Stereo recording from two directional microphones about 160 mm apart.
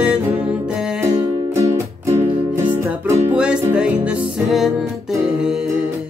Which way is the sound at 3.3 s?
5° right (ahead or behind).